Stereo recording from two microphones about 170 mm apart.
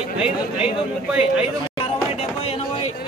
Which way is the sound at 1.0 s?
5° right (ahead or behind).